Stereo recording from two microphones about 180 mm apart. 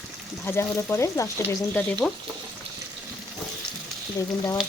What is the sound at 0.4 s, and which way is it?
Frying, 15° left (ahead or behind).